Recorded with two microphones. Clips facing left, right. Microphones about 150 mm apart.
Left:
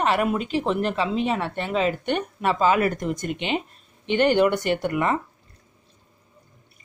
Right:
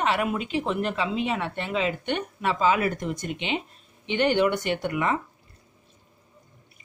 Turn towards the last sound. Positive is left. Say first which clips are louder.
# left 3 dB
turn(degrees=45)  # may be behind; listen again after turning